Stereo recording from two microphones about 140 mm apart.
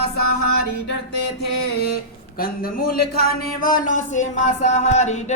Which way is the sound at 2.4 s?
90° left.